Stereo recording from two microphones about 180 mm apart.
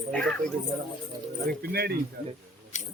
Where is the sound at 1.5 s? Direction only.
60° right (ahead or behind).